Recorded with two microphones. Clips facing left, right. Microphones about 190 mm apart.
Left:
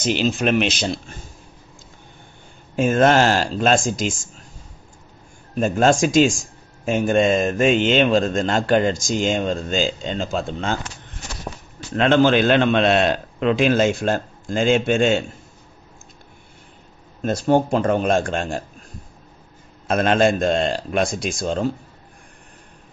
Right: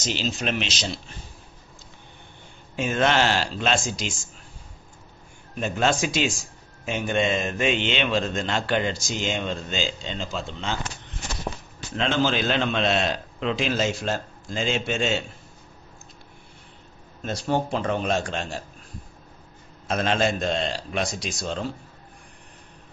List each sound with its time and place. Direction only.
0.0 s a man's voice: 55° left (ahead or behind)
2.7 s speech: 45° left (ahead or behind)
5.5 s speech: 45° left (ahead or behind)
11.9 s a man's voice: 55° left (ahead or behind)
17.2 s speech: 50° left (ahead or behind)
19.9 s speech: 55° left (ahead or behind)